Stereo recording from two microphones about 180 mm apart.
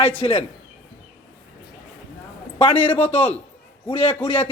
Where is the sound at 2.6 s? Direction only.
30° left (ahead or behind).